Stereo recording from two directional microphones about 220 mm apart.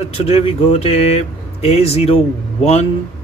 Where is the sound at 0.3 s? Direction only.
25° left (ahead or behind).